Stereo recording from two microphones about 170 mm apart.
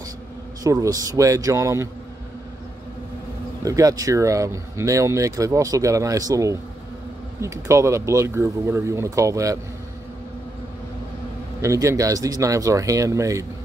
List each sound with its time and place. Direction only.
0.7 s speech: 20° right (ahead or behind)
3.6 s speech: 20° right (ahead or behind)
11.6 s speech: 15° right (ahead or behind)